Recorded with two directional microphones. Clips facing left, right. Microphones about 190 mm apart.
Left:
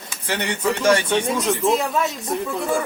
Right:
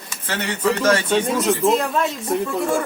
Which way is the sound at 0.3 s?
15° left (ahead or behind).